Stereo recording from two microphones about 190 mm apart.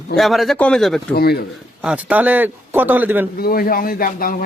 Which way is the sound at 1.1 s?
55° left (ahead or behind).